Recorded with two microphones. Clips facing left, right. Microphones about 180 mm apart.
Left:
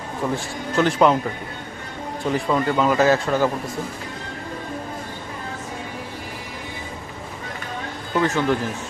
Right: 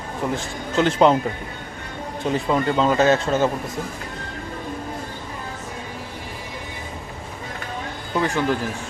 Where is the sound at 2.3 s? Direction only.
25° right (ahead or behind).